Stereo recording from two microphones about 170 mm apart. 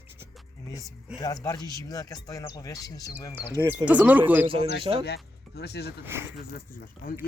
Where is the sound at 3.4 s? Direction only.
15° right (ahead or behind).